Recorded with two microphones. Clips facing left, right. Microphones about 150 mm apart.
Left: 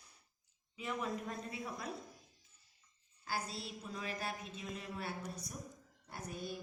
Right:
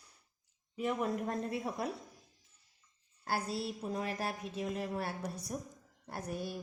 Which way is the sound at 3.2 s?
60° right (ahead or behind).